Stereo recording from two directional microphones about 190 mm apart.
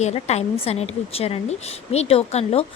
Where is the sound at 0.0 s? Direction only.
35° left (ahead or behind).